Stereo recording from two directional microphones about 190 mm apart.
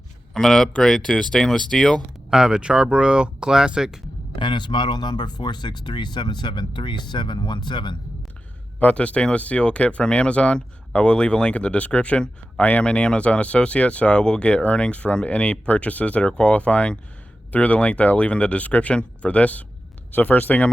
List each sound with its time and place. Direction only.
0.3 s speech: 5° left (ahead or behind)
4.4 s speech: 25° left (ahead or behind)
8.8 s speech: 5° left (ahead or behind)